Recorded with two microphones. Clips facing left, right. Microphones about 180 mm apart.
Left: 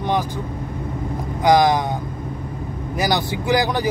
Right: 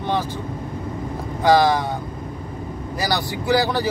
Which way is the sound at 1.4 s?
15° left (ahead or behind).